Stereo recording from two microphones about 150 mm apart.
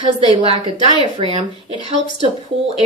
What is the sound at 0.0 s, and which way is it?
Speech, 35° right (ahead or behind).